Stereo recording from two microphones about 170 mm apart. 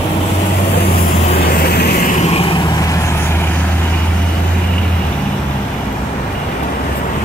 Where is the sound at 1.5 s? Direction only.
65° left (ahead or behind).